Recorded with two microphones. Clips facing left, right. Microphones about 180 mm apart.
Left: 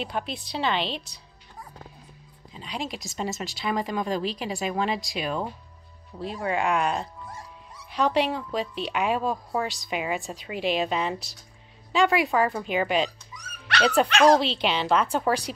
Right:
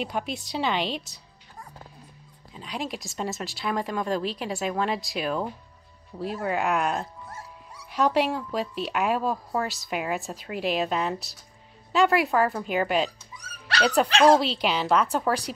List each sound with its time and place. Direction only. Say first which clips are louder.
0.0 s a woman's voice: right 1 dB; 10° right (ahead or behind)
2.5 s speech: right 1 dB; centre (ahead or behind)
13.3 s dog: left 1 dB; 30° right (ahead or behind)
14.0 s speech: right 1 dB; 30° right (ahead or behind)
14.3 s speech: even; 5° right (ahead or behind)